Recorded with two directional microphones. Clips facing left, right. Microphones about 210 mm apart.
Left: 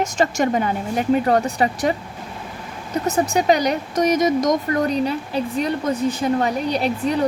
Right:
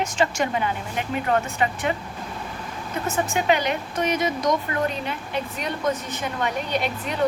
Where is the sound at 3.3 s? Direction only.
40° left (ahead or behind).